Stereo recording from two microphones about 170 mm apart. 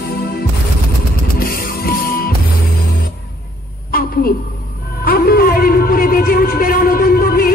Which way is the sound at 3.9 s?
60° left (ahead or behind).